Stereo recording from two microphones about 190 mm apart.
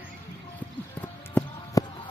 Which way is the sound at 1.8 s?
20° left (ahead or behind).